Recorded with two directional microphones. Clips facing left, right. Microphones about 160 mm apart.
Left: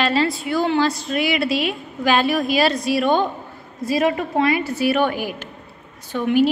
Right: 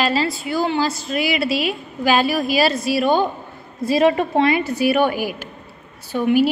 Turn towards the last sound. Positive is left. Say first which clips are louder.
# right 1 dB
turn(degrees=-10)  # may be behind; listen again after turning